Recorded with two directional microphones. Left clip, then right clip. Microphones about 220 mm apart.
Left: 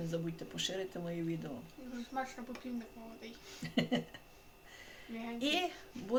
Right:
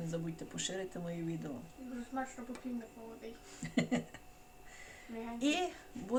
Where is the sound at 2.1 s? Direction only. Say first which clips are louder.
Left 1 dB; 45° left (ahead or behind).